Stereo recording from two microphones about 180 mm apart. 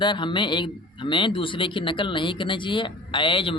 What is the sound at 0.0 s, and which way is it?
A man's voice, 25° left (ahead or behind).